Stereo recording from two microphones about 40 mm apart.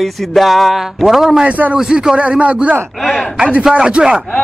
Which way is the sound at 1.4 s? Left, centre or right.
Right.